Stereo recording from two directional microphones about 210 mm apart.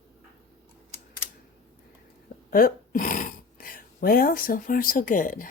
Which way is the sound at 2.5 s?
40° left (ahead or behind).